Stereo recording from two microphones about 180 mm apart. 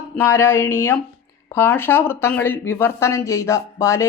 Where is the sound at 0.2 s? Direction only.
15° left (ahead or behind).